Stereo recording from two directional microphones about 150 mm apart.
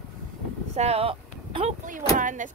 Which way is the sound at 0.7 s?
45° right (ahead or behind).